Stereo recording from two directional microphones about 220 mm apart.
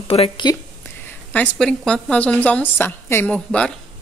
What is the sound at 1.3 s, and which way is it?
A woman's voice, 5° left (ahead or behind).